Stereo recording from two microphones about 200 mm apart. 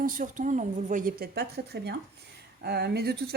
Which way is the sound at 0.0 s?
45° right (ahead or behind).